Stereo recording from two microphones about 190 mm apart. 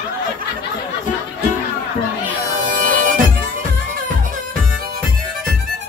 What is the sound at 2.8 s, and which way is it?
Bagpipes, 45° right (ahead or behind).